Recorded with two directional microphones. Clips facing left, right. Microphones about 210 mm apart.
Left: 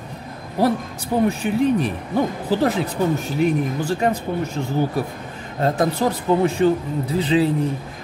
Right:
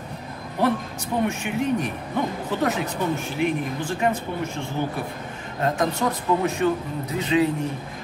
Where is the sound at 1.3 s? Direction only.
35° left (ahead or behind).